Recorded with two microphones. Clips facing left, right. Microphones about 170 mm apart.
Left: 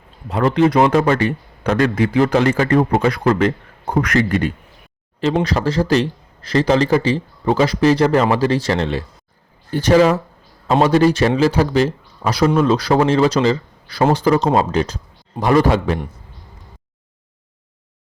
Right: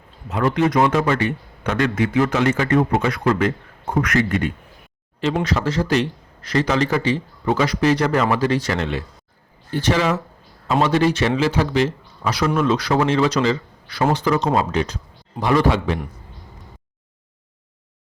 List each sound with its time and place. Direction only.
0.3 s a man's voice: 30° left (ahead or behind)